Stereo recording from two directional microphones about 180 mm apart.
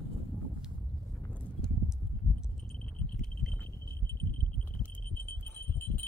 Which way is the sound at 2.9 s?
5° left (ahead or behind).